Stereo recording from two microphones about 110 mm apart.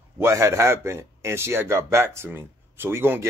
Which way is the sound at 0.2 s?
25° right (ahead or behind).